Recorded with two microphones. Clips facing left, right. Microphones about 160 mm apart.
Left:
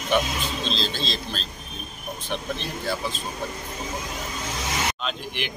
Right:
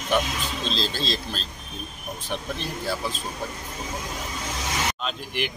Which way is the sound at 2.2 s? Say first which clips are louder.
Left 1 dB; 5° right (ahead or behind).